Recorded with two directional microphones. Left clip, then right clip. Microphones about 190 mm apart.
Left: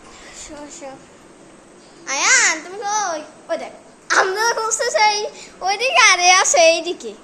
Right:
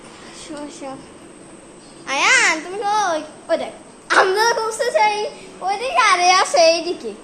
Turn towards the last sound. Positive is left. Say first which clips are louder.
# left 1 dB
turn(degrees=15)  # may be behind; listen again after turning